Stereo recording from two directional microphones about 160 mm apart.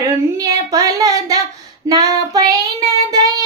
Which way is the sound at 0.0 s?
25° right (ahead or behind).